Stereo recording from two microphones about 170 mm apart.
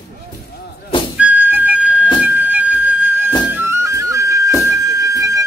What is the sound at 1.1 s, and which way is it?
Music, 10° right (ahead or behind).